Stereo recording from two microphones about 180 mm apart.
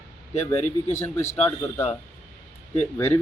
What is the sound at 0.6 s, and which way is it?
Speech, 15° left (ahead or behind).